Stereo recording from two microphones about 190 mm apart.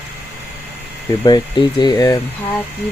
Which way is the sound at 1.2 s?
25° left (ahead or behind).